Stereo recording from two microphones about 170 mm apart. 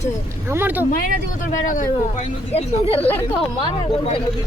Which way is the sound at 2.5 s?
35° left (ahead or behind).